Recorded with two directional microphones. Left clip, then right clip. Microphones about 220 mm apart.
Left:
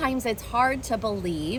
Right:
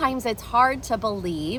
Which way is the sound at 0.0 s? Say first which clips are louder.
Right 2 dB; 15° right (ahead or behind).